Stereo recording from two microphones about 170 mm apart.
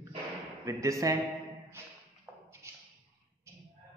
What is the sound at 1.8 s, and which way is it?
Tap, 15° right (ahead or behind).